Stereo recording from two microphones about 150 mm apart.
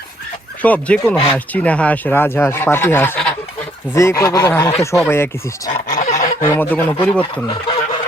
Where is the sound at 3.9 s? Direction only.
20° left (ahead or behind).